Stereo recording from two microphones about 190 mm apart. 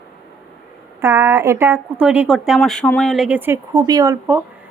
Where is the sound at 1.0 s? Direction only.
15° right (ahead or behind).